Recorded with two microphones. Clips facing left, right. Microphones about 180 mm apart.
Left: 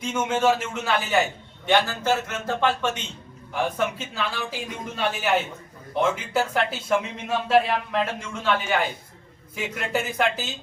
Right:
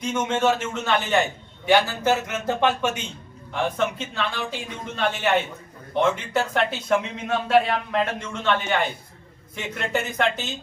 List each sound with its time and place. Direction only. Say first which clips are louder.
0.1 s a man's voice: even; 5° left (ahead or behind)
1.6 s speech: right 2 dB; 10° right (ahead or behind)
3.5 s a man's voice: right 1 dB; 5° left (ahead or behind)